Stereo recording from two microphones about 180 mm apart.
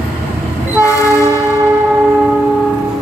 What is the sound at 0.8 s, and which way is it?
Train, 20° left (ahead or behind).